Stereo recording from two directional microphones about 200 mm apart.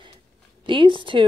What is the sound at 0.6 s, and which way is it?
Speech, 25° right (ahead or behind).